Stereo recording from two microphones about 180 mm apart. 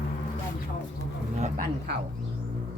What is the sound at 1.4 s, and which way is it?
Speech, 45° right (ahead or behind).